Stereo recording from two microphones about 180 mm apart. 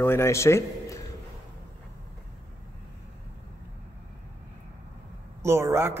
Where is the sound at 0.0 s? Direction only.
15° left (ahead or behind).